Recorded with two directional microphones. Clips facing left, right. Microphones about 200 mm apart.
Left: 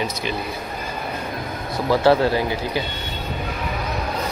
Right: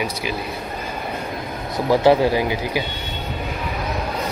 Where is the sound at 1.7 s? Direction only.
15° right (ahead or behind).